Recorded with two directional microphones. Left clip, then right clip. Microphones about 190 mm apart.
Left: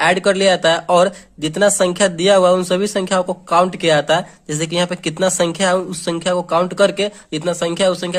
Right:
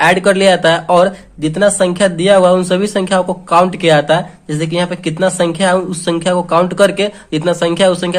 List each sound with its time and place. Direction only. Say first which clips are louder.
0.0 s speech: right 4 dB; 30° left (ahead or behind)